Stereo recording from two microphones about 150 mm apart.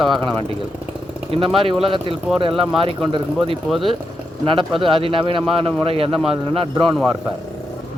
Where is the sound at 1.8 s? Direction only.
35° right (ahead or behind).